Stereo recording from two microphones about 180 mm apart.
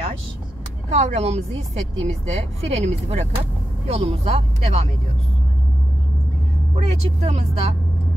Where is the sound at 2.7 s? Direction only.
40° right (ahead or behind).